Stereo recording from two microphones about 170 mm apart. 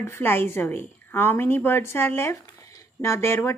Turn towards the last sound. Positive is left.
turn(degrees=15)  # may be behind; listen again after turning